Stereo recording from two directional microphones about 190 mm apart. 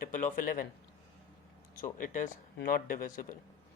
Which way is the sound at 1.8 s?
45° left (ahead or behind).